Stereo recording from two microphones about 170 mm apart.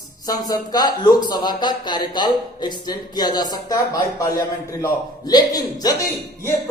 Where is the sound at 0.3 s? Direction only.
25° left (ahead or behind).